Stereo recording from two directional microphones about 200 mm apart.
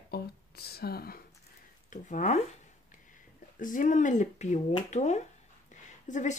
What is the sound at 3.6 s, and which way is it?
Speech, 40° left (ahead or behind).